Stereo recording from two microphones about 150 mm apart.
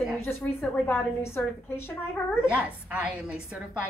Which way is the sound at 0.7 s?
15° left (ahead or behind).